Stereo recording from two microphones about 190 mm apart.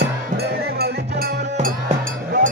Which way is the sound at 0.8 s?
55° right (ahead or behind).